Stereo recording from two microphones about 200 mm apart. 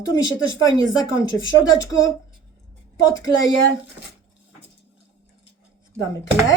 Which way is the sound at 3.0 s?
15° left (ahead or behind).